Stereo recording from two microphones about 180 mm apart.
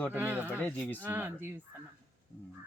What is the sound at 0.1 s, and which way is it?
Speech, 10° right (ahead or behind).